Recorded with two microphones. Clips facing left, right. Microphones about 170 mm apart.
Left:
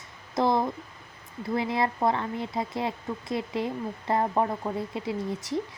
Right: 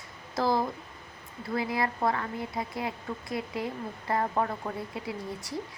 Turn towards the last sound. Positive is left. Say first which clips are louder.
# left 6 dB
turn(degrees=20)  # may be behind; listen again after turning